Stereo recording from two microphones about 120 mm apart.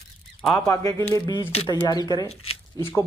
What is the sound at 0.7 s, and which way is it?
Speech, 25° left (ahead or behind).